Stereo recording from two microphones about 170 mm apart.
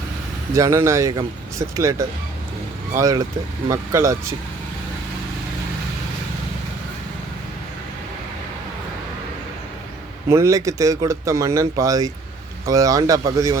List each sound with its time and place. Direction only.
0.5 s speech: 20° right (ahead or behind)
10.2 s speech: 15° right (ahead or behind)